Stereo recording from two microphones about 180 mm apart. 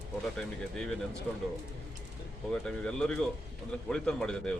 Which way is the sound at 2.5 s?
5° left (ahead or behind).